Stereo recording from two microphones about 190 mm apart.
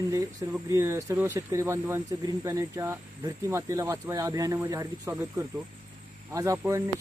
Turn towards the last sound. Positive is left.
turn(degrees=-15)  # may be behind; listen again after turning